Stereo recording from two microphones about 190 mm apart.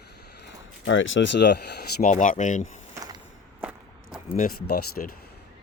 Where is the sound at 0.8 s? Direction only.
85° left; by 2.1 s 55° left (ahead or behind).